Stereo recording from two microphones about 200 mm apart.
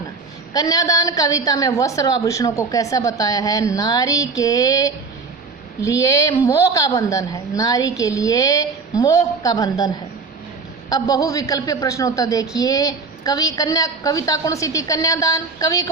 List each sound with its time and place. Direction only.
0.5 s a woman's voice: 15° left (ahead or behind)